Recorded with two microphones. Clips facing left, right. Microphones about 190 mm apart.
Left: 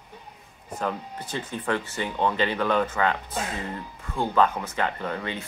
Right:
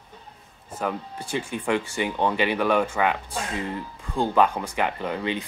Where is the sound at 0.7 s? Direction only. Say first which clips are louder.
Right 1 dB; 10° right (ahead or behind).